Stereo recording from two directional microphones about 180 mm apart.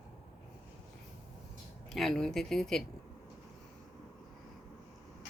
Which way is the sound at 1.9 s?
Centre (ahead or behind).